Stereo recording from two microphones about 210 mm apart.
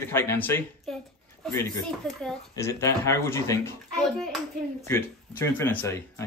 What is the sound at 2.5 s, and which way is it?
Speech, 15° left (ahead or behind).